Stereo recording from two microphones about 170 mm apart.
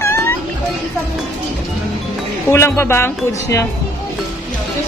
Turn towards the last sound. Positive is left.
turn(degrees=15)  # may be behind; listen again after turning